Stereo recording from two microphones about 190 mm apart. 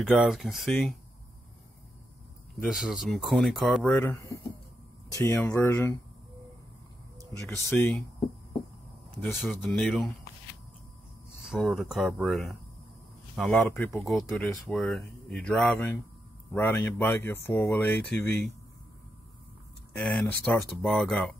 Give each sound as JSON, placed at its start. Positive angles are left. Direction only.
{"t": 0.0, "sound": "speech", "side_deg": 0}
{"t": 2.5, "sound": "speech", "side_deg": 0}
{"t": 3.9, "sound": "speech", "side_deg": 15}
{"t": 7.5, "sound": "speech", "side_deg": 10}
{"t": 9.2, "sound": "speech", "side_deg": 0}
{"t": 11.4, "sound": "speech", "side_deg": 0}
{"t": 20.0, "sound": "speech", "side_deg": 5}